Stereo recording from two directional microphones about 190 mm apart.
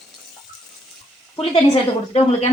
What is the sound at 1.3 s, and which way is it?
Speech, 30° left (ahead or behind).